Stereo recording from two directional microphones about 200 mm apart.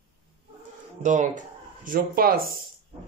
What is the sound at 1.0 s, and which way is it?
Speech, 40° right (ahead or behind).